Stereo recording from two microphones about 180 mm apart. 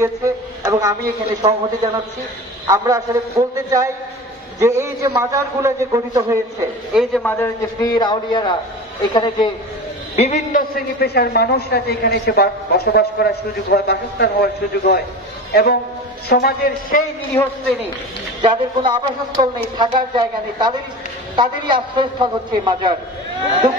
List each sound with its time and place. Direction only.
0.0 s a man's voice: 15° right (ahead or behind)
2.6 s a man's voice: 20° right (ahead or behind)
6.9 s a man's voice: centre (ahead or behind)
7.2 s a man's voice: 15° left (ahead or behind)
10.1 s a man's voice: 40° left (ahead or behind)
11.0 s a woman's voice: 65° left (ahead or behind)
17.4 s a man's voice: 25° left (ahead or behind)
18.4 s a man's voice: 25° right (ahead or behind)